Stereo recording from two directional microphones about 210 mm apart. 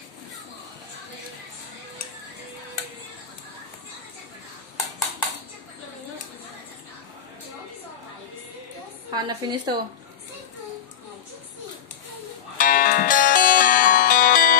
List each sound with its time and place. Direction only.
9.1 s a woman's voice: 20° right (ahead or behind)
12.5 s music: 40° left (ahead or behind)